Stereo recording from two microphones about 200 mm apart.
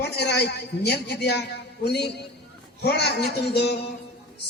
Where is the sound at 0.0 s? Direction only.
55° left (ahead or behind).